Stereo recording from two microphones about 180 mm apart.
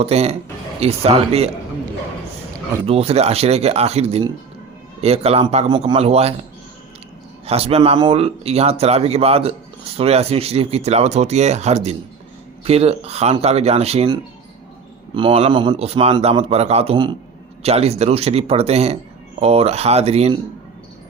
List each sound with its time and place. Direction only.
0.0 s speech: 35° right (ahead or behind)
2.8 s speech: 35° right (ahead or behind)
7.4 s speech: 35° right (ahead or behind)